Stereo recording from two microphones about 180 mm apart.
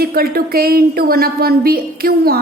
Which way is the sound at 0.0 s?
55° right (ahead or behind).